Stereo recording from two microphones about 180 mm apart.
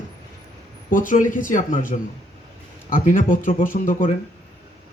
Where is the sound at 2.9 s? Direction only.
45° left (ahead or behind).